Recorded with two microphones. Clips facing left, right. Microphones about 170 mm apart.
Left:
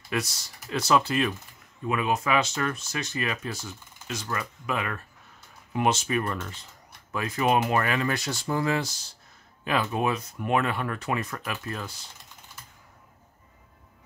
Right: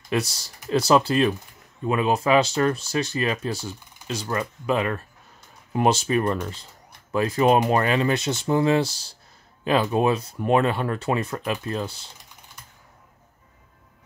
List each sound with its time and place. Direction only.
0.1 s speech: 30° right (ahead or behind)